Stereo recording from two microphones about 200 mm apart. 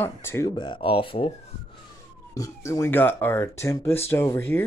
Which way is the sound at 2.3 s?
15° left (ahead or behind).